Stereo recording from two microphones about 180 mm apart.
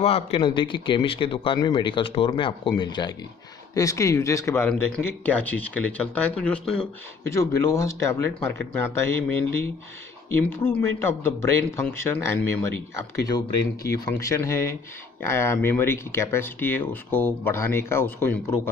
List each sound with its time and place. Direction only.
0.0 s a man's voice: 35° left (ahead or behind); by 12.5 s 15° left (ahead or behind)
13.8 s speech: 15° left (ahead or behind)